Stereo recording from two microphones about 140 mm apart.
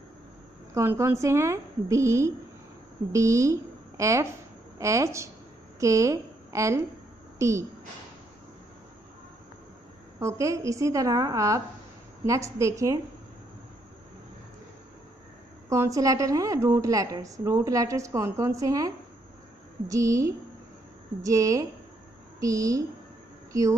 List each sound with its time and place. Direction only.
0.7 s a woman's voice: 20° right (ahead or behind)
10.1 s a woman's voice: 20° right (ahead or behind)
15.7 s a woman's voice: 20° right (ahead or behind)